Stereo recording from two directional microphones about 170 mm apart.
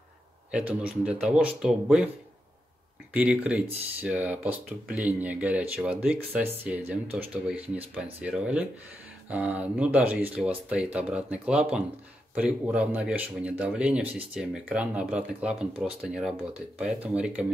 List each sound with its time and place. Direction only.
0.5 s a man's voice: 5° right (ahead or behind)
3.1 s a man's voice: 10° right (ahead or behind)